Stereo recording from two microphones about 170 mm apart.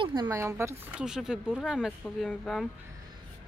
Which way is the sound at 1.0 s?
5° right (ahead or behind).